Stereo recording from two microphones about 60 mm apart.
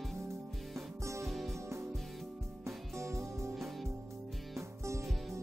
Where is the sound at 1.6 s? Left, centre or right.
Right.